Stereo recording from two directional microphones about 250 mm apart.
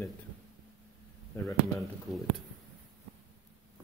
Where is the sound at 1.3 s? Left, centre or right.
Centre.